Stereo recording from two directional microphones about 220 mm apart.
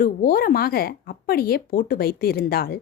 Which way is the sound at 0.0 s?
40° left (ahead or behind).